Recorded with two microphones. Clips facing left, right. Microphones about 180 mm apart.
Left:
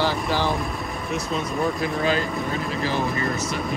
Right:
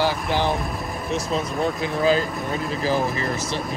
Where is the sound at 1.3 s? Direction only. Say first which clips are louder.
Even; 35° right (ahead or behind).